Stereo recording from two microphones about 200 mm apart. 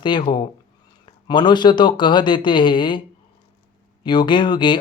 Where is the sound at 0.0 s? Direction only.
20° left (ahead or behind).